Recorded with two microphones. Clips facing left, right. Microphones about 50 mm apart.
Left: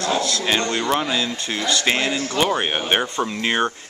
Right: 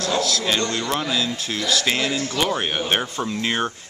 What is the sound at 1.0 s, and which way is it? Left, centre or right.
Speech, centre.